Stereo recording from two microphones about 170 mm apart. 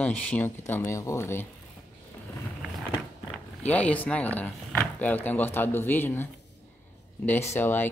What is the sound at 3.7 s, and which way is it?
Speech, 10° left (ahead or behind).